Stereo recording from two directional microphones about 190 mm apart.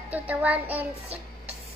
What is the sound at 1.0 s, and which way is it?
Child singing, 30° right (ahead or behind).